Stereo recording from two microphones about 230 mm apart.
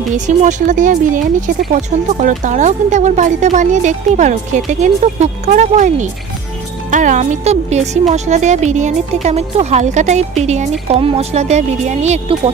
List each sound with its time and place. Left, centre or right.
0.1 s speech: right